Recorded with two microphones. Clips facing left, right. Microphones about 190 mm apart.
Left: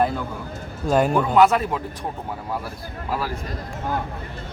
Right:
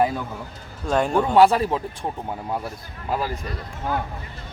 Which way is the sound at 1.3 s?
30° right (ahead or behind).